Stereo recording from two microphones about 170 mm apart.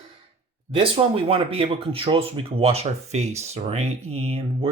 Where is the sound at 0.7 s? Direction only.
35° right (ahead or behind).